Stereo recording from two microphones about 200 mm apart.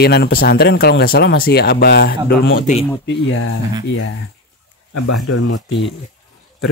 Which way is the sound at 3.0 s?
70° left (ahead or behind).